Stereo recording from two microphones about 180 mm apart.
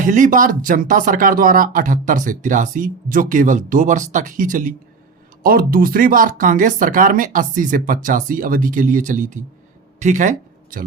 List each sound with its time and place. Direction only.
0.0 s speech: 45° right (ahead or behind)